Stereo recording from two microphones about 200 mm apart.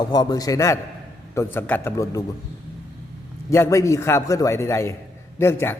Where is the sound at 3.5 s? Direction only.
15° left (ahead or behind).